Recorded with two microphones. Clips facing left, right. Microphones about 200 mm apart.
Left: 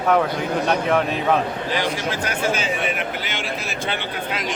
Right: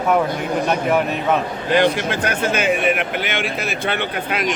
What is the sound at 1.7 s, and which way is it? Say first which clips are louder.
Speech: right 9 dB; 60° right (ahead or behind).